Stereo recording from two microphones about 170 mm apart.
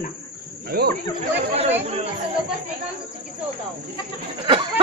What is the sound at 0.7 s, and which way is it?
Speech, 60° right (ahead or behind).